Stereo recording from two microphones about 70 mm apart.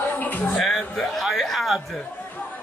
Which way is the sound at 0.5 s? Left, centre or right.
Centre.